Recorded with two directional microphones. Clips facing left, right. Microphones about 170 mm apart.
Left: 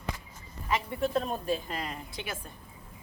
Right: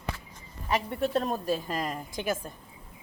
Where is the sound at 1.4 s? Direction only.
40° right (ahead or behind).